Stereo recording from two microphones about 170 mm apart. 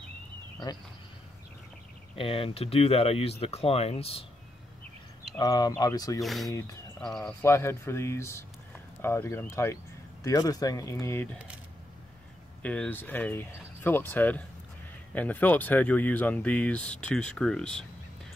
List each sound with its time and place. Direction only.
2.1 s speech: 35° left (ahead or behind)
5.4 s speech: 20° left (ahead or behind)
6.2 s speech: centre (ahead or behind)
7.2 s speech: 15° left (ahead or behind)
12.6 s speech: 10° left (ahead or behind)